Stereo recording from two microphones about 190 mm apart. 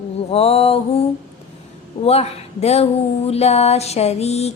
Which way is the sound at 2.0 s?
35° left (ahead or behind).